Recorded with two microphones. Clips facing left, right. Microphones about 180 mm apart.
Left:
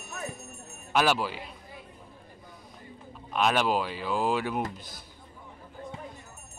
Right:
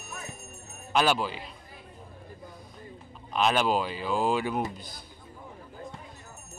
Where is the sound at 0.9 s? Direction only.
5° left (ahead or behind).